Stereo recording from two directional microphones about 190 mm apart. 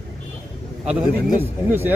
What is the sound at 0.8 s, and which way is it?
A man's voice, 5° right (ahead or behind).